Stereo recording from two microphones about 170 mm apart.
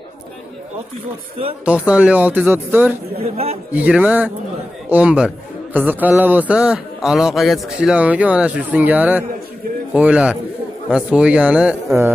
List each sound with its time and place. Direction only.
1.6 s a man's voice: 5° right (ahead or behind)
3.2 s a man's voice: 35° right (ahead or behind)
3.7 s a man's voice: 10° right (ahead or behind)